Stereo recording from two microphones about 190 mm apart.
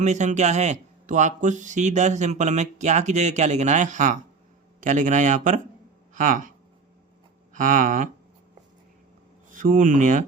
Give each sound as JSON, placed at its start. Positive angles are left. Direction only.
{"t": 0.0, "sound": "speech", "side_deg": -40}
{"t": 7.5, "sound": "speech", "side_deg": -45}
{"t": 9.5, "sound": "speech", "side_deg": -45}